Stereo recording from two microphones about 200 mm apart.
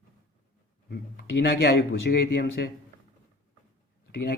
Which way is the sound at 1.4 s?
55° left (ahead or behind).